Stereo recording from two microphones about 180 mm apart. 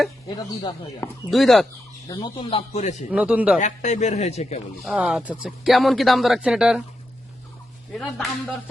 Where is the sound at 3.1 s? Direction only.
5° right (ahead or behind).